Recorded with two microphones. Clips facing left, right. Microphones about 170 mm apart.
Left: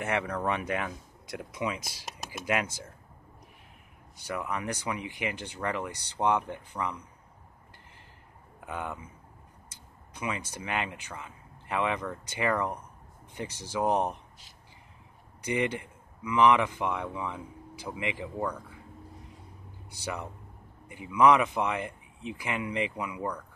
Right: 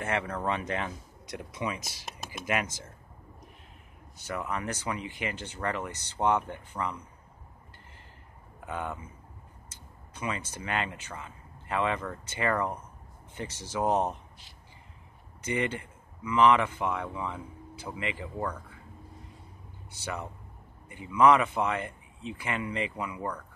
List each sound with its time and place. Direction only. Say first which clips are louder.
0.0 s speech: left 1 dB; 15° left (ahead or behind)
4.2 s speech: even; 10° left (ahead or behind)
8.6 s speech: right 1 dB; 15° left (ahead or behind)
15.4 s speech: left 1 dB; 15° left (ahead or behind)
19.9 s speech: even; 15° left (ahead or behind)